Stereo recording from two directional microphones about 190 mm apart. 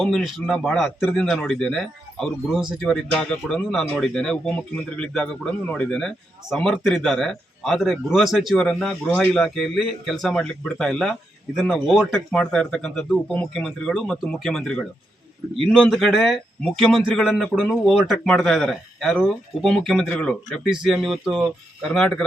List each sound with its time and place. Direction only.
0.0 s speech: centre (ahead or behind)